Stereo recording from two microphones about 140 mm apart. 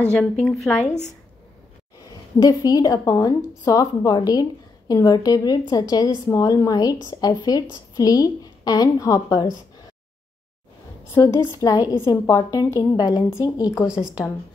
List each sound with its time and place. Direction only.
0.1 s a woman's voice: 5° left (ahead or behind)
0.8 s a woman's voice: 55° left (ahead or behind)
2.4 s a woman's voice: 25° left (ahead or behind)
11.1 s a woman's voice: 20° left (ahead or behind)